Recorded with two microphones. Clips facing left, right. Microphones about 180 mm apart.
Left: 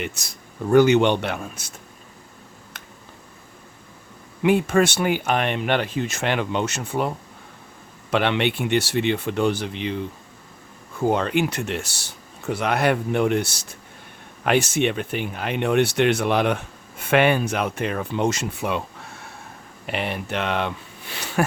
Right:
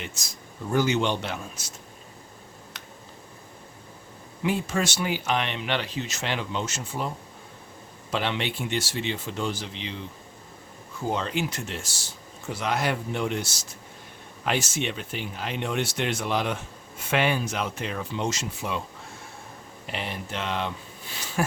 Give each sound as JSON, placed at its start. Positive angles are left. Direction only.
{"t": 0.0, "sound": "speech", "side_deg": 60}
{"t": 4.4, "sound": "speech", "side_deg": 60}
{"t": 8.1, "sound": "speech", "side_deg": 65}
{"t": 19.9, "sound": "speech", "side_deg": 65}